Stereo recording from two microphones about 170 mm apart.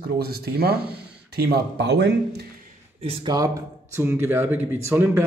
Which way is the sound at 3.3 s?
20° right (ahead or behind).